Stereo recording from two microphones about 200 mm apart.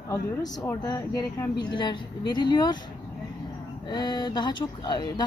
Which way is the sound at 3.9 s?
20° left (ahead or behind).